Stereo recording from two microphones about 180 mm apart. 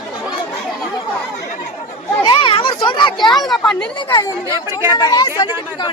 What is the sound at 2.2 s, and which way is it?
Children playing, 30° left (ahead or behind).